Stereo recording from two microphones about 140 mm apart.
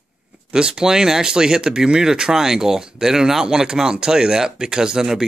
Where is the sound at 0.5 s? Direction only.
5° right (ahead or behind).